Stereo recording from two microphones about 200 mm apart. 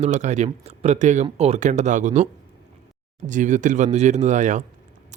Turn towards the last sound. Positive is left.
turn(degrees=-35)  # may be behind; listen again after turning